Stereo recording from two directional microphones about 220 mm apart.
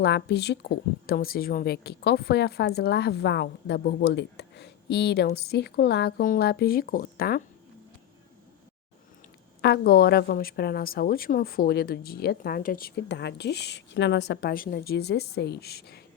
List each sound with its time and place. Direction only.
0.0 s speech: 50° left (ahead or behind)
9.6 s speech: 45° left (ahead or behind)